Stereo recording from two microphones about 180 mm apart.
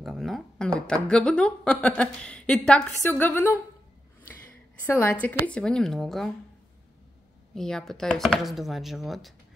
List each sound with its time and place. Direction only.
0.0 s a sound: centre (ahead or behind)
1.0 s a woman's voice: 5° left (ahead or behind)
4.8 s a woman's voice: 15° left (ahead or behind)
7.5 s a woman's voice: centre (ahead or behind)